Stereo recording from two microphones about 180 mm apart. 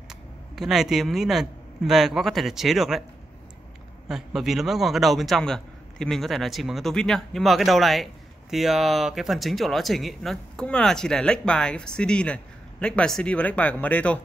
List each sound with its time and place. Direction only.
0.1 s speech: centre (ahead or behind)
4.1 s a man's voice: centre (ahead or behind)